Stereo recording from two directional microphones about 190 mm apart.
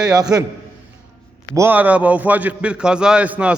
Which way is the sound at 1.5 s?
10° right (ahead or behind).